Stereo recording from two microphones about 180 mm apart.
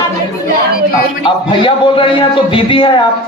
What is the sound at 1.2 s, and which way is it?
A man's voice, 25° left (ahead or behind).